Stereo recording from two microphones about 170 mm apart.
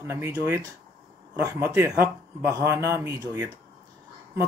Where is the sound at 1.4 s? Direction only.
15° right (ahead or behind).